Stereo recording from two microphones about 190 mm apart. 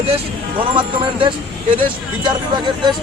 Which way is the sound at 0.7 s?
25° right (ahead or behind).